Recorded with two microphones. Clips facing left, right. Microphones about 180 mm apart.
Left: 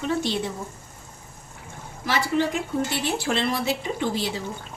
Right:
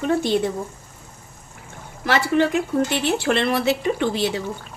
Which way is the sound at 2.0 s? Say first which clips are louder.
Right 5 dB; 65° right (ahead or behind).